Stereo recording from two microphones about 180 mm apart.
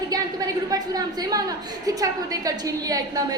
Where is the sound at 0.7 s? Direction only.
20° right (ahead or behind).